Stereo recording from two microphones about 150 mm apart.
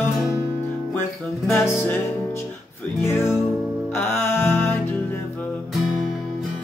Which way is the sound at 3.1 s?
15° left (ahead or behind).